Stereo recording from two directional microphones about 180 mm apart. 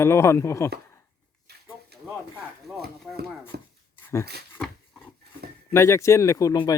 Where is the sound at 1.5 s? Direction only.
65° right (ahead or behind).